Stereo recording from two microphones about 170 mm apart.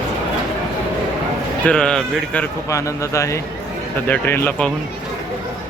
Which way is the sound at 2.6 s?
20° left (ahead or behind).